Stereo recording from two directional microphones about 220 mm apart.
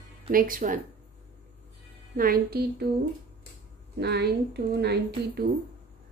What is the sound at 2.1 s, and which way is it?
Speech, 40° right (ahead or behind).